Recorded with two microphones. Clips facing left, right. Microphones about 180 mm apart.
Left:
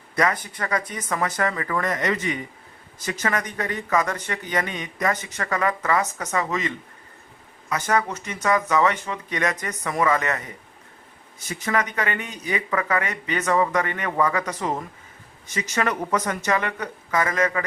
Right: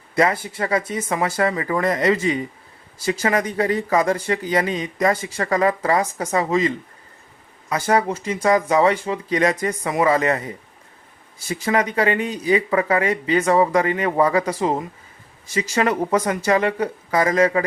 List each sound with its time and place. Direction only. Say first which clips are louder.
0.2 s speech: right 4 dB; 30° right (ahead or behind)